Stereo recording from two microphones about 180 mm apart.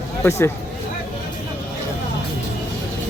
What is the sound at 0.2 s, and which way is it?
Speech, 15° left (ahead or behind).